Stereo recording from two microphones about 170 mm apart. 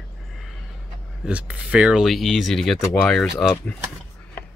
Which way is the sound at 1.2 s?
5° right (ahead or behind).